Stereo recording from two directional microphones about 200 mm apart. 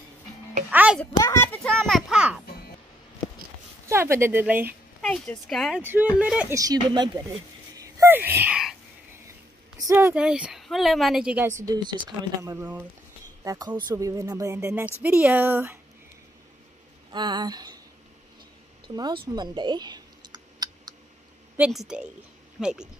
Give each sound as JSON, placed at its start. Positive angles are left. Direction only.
{"t": 0.7, "sound": "music", "side_deg": -10}
{"t": 1.1, "sound": "speech", "side_deg": 15}
{"t": 3.9, "sound": "speech", "side_deg": -10}
{"t": 5.0, "sound": "speech", "side_deg": 5}
{"t": 5.9, "sound": "speech", "side_deg": -10}
{"t": 6.5, "sound": "speech", "side_deg": -20}
{"t": 9.8, "sound": "speech", "side_deg": -15}
{"t": 17.1, "sound": "speech", "side_deg": -20}
{"t": 18.9, "sound": "speech", "side_deg": -25}
{"t": 19.2, "sound": "clicking", "side_deg": -20}
{"t": 21.5, "sound": "speech", "side_deg": -5}